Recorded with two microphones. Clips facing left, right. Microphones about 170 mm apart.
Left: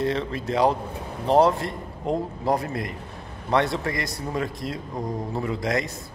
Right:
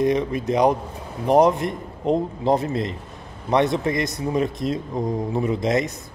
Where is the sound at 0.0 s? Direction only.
15° right (ahead or behind).